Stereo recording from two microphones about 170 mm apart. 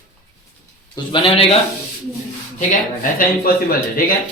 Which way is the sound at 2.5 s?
50° left (ahead or behind).